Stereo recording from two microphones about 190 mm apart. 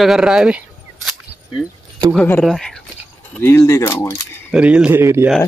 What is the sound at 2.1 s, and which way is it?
Speech, 10° left (ahead or behind).